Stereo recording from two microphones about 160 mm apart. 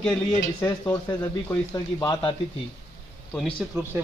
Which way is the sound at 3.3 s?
Centre (ahead or behind).